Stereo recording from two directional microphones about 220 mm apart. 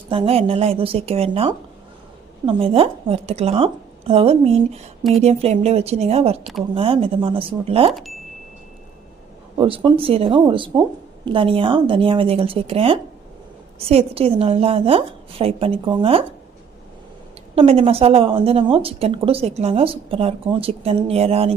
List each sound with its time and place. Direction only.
0.1 s a woman's voice: 25° right (ahead or behind)
9.6 s a woman's voice: 20° right (ahead or behind)
17.5 s a woman's voice: 25° right (ahead or behind)